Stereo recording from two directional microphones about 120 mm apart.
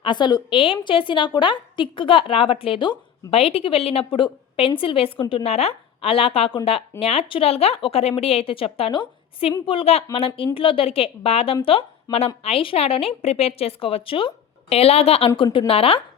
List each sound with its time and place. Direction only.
0.0 s a woman's voice: 40° left (ahead or behind)
3.3 s a woman's voice: 55° left (ahead or behind)